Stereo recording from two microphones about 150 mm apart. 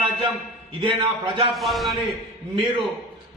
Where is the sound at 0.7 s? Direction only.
35° right (ahead or behind).